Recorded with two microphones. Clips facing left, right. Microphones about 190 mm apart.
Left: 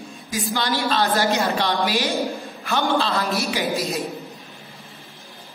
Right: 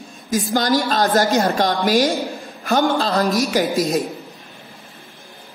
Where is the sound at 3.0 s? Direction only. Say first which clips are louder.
Right 5 dB; 40° right (ahead or behind).